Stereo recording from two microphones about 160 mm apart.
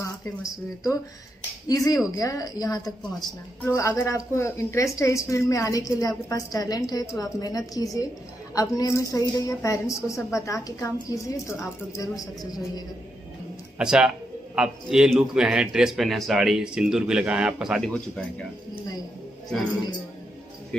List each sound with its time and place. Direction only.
1.7 s a woman's voice: 20° left (ahead or behind)
13.7 s speech: 5° right (ahead or behind)